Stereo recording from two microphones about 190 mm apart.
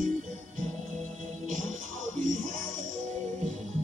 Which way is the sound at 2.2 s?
45° right (ahead or behind).